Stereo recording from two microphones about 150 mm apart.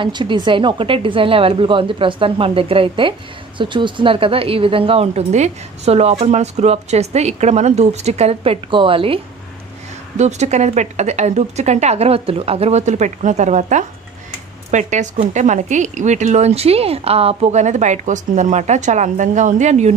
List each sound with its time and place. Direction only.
0.0 s a woman's voice: 35° right (ahead or behind)
10.1 s a woman's voice: 50° right (ahead or behind)